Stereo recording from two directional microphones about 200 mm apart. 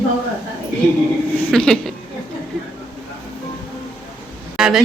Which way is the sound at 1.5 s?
5° left (ahead or behind).